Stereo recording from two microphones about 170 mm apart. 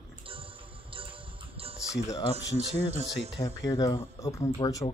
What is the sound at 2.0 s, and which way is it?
Speech, 20° left (ahead or behind).